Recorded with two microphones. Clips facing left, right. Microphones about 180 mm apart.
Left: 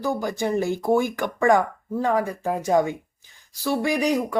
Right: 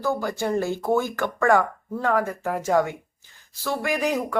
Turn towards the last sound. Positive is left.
turn(degrees=15)  # may be behind; listen again after turning